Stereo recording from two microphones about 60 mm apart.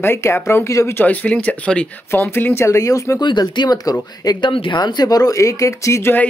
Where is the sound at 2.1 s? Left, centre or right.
Left.